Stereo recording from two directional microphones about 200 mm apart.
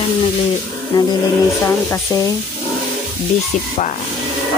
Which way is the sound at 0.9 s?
20° left (ahead or behind).